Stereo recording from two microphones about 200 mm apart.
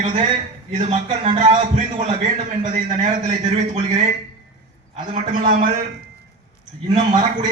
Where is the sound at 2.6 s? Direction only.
40° right (ahead or behind).